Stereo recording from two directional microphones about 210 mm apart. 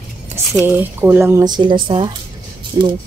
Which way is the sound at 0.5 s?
10° right (ahead or behind).